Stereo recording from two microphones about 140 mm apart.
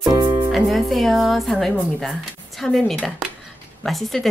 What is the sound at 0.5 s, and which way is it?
Speech, centre (ahead or behind).